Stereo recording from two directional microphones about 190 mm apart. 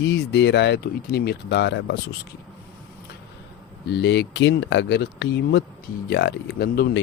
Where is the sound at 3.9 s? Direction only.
65° left (ahead or behind).